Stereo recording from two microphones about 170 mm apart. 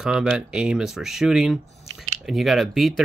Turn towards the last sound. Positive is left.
turn(degrees=0)  # may be behind; listen again after turning